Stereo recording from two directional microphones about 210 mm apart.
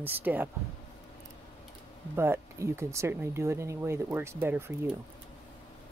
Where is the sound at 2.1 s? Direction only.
10° right (ahead or behind).